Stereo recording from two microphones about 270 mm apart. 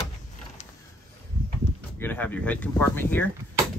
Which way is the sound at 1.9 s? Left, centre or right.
Centre.